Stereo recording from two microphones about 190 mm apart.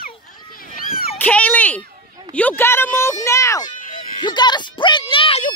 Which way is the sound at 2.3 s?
10° left (ahead or behind).